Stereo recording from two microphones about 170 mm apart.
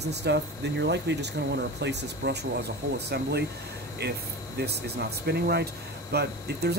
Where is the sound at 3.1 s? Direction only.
75° right (ahead or behind).